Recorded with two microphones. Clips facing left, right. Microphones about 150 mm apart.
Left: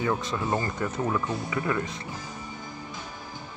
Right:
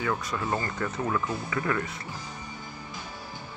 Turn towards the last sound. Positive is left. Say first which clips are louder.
# left 1 dB
turn(degrees=20)  # may be behind; listen again after turning